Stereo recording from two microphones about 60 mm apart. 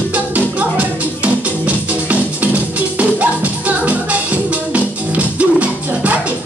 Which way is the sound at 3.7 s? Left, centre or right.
Right.